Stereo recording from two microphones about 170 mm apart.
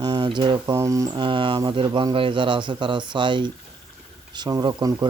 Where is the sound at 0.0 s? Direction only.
25° right (ahead or behind).